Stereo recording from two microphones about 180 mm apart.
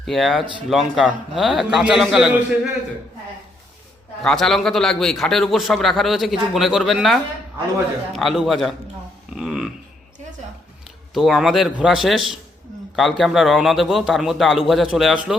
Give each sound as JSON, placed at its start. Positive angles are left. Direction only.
{"t": 0.0, "sound": "a man's voice", "side_deg": 0}
{"t": 4.2, "sound": "a man's voice", "side_deg": 0}
{"t": 9.3, "sound": "a sound", "side_deg": 0}
{"t": 11.1, "sound": "a man's voice", "side_deg": 0}